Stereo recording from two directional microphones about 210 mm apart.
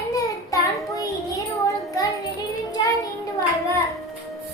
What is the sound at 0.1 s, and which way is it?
Child singing, 15° left (ahead or behind).